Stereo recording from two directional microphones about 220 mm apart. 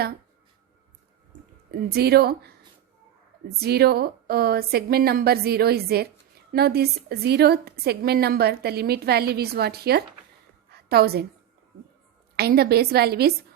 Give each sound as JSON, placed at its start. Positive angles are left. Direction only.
{"t": 1.9, "sound": "a woman's voice", "side_deg": -45}
{"t": 3.6, "sound": "a woman's voice", "side_deg": -45}
{"t": 10.7, "sound": "a sound", "side_deg": -45}
{"t": 12.4, "sound": "a woman's voice", "side_deg": -45}